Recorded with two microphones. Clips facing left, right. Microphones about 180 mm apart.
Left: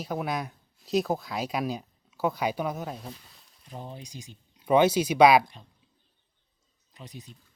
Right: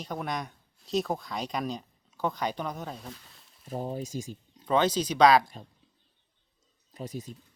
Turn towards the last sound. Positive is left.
turn(degrees=-45)  # may be behind; listen again after turning